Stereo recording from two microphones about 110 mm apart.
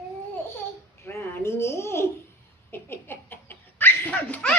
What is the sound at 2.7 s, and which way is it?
Laughter, 20° left (ahead or behind).